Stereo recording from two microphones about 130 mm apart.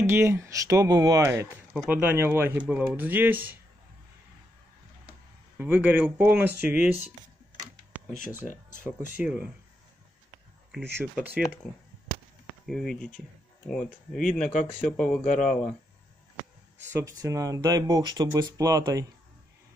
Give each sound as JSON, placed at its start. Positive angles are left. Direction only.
{"t": 0.0, "sound": "speech", "side_deg": -20}
{"t": 1.9, "sound": "speech", "side_deg": -15}
{"t": 5.6, "sound": "speech", "side_deg": -15}
{"t": 7.9, "sound": "a sound", "side_deg": -10}
{"t": 8.8, "sound": "speech", "side_deg": -10}
{"t": 11.1, "sound": "speech", "side_deg": -10}
{"t": 11.6, "sound": "speech", "side_deg": 5}
{"t": 16.8, "sound": "speech", "side_deg": -25}